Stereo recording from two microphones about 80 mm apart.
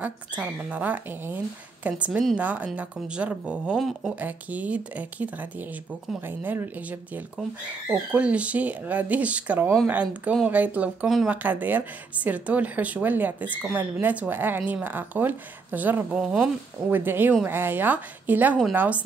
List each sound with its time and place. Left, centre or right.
0.0 s speech: centre
16.9 s speech: right